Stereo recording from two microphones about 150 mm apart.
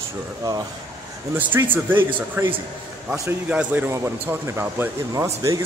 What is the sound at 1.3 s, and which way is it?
Speech, 10° right (ahead or behind).